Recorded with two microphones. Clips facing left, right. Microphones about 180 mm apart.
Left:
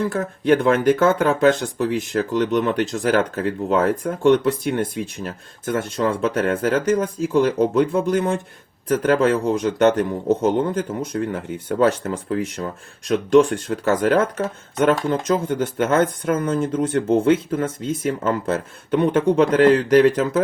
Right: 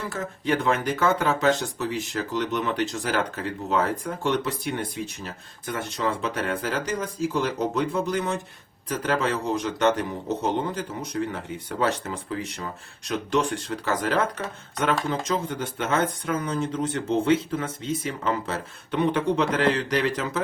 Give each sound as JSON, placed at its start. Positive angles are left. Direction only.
{"t": 0.1, "sound": "speech", "side_deg": 50}
{"t": 13.3, "sound": "speech", "side_deg": 50}